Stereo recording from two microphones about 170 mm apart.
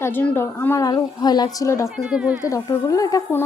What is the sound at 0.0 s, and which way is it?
A woman's voice, 10° left (ahead or behind).